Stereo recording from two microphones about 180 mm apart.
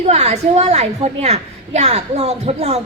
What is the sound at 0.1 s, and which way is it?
A woman's voice, 35° right (ahead or behind).